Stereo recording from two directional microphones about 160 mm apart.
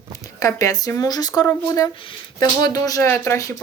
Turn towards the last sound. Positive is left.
turn(degrees=20)  # may be behind; listen again after turning